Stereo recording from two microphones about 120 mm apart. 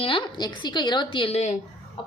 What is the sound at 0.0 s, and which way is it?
A woman's voice, 45° left (ahead or behind).